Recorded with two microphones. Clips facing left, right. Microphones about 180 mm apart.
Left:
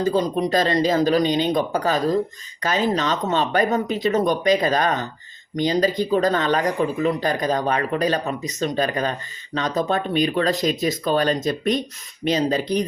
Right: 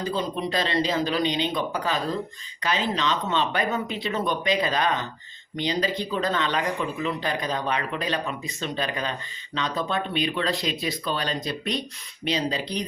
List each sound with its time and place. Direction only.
0.0 s speech: 40° left (ahead or behind)